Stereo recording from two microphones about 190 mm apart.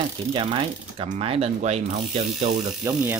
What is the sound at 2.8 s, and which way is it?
Speech, 15° right (ahead or behind).